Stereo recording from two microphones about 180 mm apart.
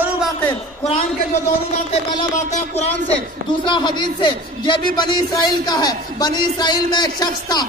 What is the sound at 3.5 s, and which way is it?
A man's voice, 25° left (ahead or behind).